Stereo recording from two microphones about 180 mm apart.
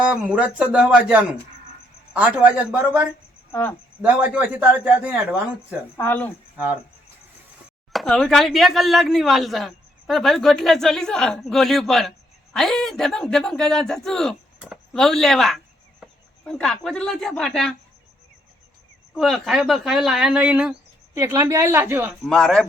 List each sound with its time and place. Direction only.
0.0 s speech: 5° right (ahead or behind)
3.5 s speech: 10° left (ahead or behind)
4.0 s speech: 10° right (ahead or behind)
6.0 s speech: 10° left (ahead or behind)
7.9 s speech: centre (ahead or behind)
19.1 s speech: centre (ahead or behind)
21.2 s speech: 20° right (ahead or behind)
22.3 s speech: centre (ahead or behind)